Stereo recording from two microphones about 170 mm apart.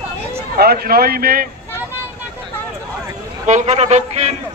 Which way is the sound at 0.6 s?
65° right (ahead or behind).